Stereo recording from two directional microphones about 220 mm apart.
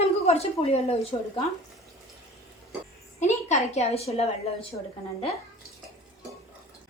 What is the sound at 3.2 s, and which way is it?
A woman's voice, 30° left (ahead or behind).